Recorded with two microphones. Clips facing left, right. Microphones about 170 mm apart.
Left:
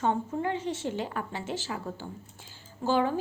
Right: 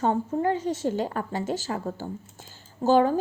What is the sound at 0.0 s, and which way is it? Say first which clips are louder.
A woman's voice: right 4 dB; 40° right (ahead or behind).